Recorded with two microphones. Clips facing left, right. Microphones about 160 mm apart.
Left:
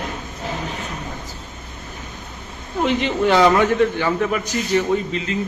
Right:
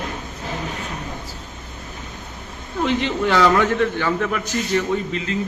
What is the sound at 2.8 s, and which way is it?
A man's voice, 20° left (ahead or behind).